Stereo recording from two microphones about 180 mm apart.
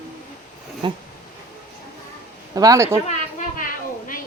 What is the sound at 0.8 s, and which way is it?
Speech, 25° right (ahead or behind).